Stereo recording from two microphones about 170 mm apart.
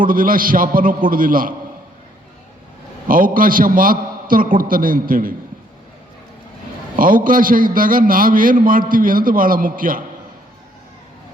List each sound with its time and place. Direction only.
0.0 s a man's voice: 55° right (ahead or behind)
3.1 s a man's voice: 55° right (ahead or behind)
6.9 s a man's voice: 55° right (ahead or behind)